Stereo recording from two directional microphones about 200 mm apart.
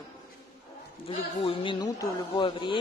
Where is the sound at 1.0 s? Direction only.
25° left (ahead or behind).